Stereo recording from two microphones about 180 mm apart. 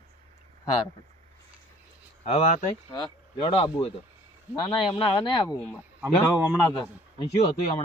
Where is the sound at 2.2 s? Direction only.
40° left (ahead or behind).